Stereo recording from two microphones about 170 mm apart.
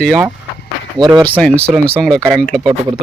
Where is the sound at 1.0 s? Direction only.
20° right (ahead or behind).